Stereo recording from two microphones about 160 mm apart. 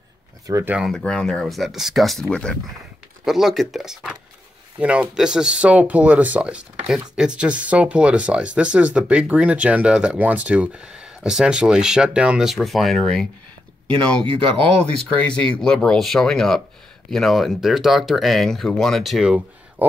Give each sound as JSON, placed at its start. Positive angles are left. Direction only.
{"t": 0.5, "sound": "speech", "side_deg": -20}
{"t": 0.7, "sound": "speech", "side_deg": 0}
{"t": 15.1, "sound": "speech", "side_deg": 5}